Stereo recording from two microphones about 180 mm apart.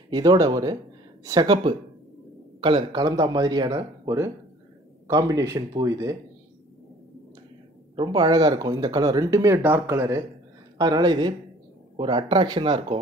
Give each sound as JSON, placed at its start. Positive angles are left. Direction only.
{"t": 0.1, "sound": "speech", "side_deg": -20}
{"t": 7.9, "sound": "speech", "side_deg": -25}